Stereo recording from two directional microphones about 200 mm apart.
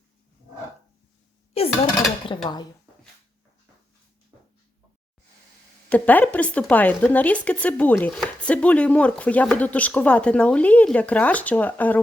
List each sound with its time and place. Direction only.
2.2 s speech: 25° left (ahead or behind)
5.9 s speech: 10° left (ahead or behind)